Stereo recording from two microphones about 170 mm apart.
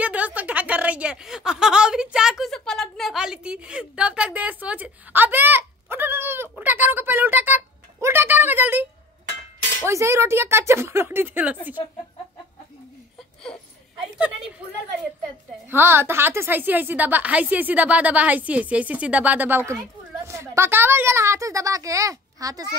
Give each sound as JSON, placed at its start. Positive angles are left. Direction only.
{"t": 0.0, "sound": "a sound", "side_deg": -10}
{"t": 9.8, "sound": "a woman's voice", "side_deg": -15}
{"t": 14.1, "sound": "a woman's voice", "side_deg": -5}
{"t": 15.7, "sound": "a woman's voice", "side_deg": -15}